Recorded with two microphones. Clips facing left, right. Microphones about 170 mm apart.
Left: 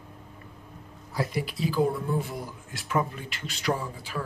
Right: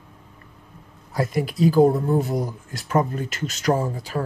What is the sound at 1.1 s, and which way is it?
Speech, 50° right (ahead or behind).